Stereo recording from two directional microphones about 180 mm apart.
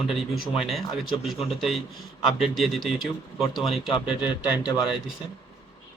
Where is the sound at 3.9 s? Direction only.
30° left (ahead or behind).